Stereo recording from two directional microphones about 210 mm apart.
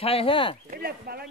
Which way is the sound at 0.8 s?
45° right (ahead or behind).